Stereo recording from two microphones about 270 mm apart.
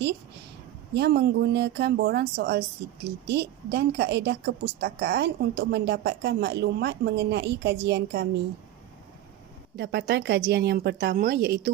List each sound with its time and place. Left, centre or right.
0.9 s a woman's voice: right
9.7 s a woman's voice: right